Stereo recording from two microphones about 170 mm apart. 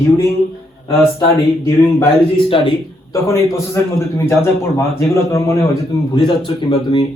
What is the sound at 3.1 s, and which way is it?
A man's voice, 15° left (ahead or behind).